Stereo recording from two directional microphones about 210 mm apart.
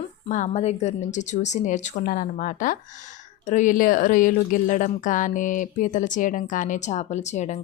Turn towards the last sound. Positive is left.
turn(degrees=35)  # may be behind; listen again after turning